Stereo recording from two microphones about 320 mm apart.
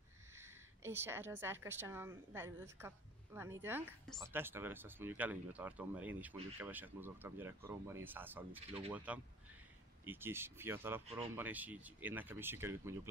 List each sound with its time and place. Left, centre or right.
0.3 s a woman's voice: centre
8.5 s speech: centre
8.9 s speech: centre